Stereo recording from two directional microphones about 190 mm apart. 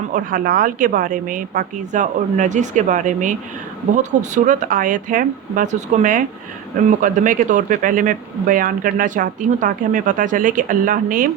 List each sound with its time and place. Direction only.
0.1 s speech: 45° right (ahead or behind)